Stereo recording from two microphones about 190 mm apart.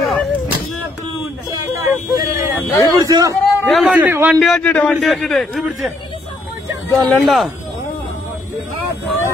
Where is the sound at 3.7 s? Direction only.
5° right (ahead or behind).